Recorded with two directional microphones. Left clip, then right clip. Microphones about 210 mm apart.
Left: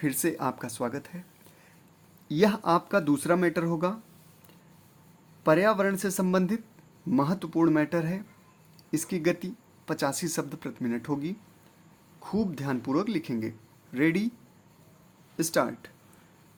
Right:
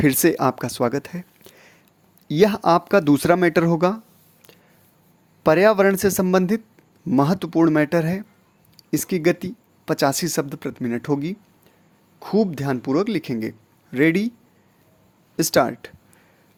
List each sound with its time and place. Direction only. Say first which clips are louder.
0.0 s speech: right 11 dB; 45° right (ahead or behind)
5.4 s speech: right 8 dB; 45° right (ahead or behind)
15.4 s speech: right 9 dB; 40° right (ahead or behind)